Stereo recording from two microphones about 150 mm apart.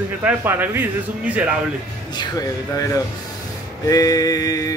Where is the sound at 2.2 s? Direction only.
25° left (ahead or behind).